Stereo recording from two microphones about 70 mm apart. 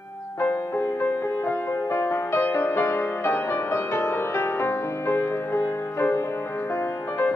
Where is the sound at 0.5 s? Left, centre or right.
Left.